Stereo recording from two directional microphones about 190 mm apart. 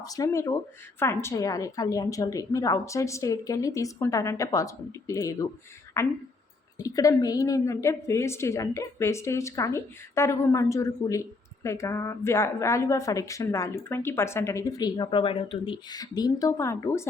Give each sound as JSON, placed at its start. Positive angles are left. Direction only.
{"t": 0.0, "sound": "a woman's voice", "side_deg": 20}